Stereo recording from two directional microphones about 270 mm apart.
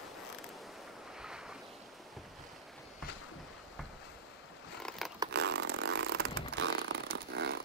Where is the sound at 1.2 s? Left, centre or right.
Centre.